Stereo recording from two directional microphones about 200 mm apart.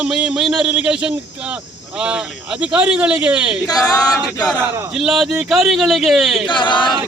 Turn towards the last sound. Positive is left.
turn(degrees=25)  # may be behind; listen again after turning